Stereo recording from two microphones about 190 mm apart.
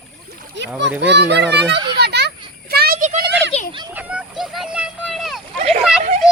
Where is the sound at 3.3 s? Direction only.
65° right (ahead or behind).